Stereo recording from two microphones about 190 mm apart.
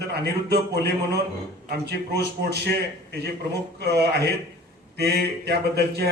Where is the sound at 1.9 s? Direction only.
60° right (ahead or behind).